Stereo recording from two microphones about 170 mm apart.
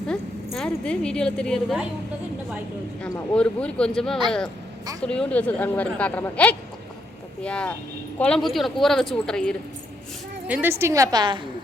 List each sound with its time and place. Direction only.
0.1 s a woman's voice: 5° left (ahead or behind)
3.0 s speech: 5° left (ahead or behind)
10.4 s a woman's voice: 10° right (ahead or behind)